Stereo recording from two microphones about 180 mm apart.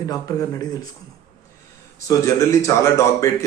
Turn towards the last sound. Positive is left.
turn(degrees=15)  # may be behind; listen again after turning